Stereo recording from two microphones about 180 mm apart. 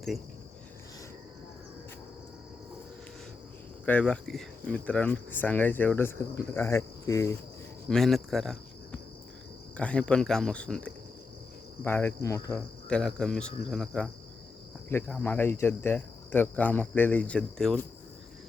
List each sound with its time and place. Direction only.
3.8 s speech: 5° left (ahead or behind)
7.9 s speech: centre (ahead or behind)
9.7 s cricket: 5° left (ahead or behind)
11.8 s speech: 10° left (ahead or behind)
12.5 s cricket: 5° left (ahead or behind)
14.8 s speech: 10° left (ahead or behind)